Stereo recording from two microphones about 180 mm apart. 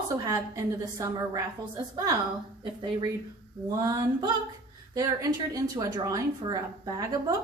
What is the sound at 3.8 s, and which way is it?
Speech, 20° right (ahead or behind).